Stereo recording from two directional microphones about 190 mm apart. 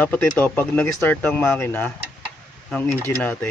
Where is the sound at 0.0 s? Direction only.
5° left (ahead or behind).